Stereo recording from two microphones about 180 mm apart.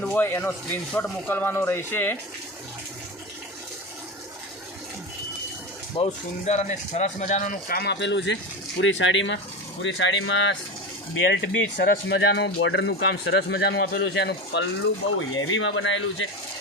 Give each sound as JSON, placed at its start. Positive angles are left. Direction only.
{"t": 0.0, "sound": "speech", "side_deg": 10}
{"t": 6.0, "sound": "speech", "side_deg": 40}
{"t": 7.8, "sound": "speech", "side_deg": 75}
{"t": 11.3, "sound": "speech", "side_deg": 75}
{"t": 15.4, "sound": "speech", "side_deg": 90}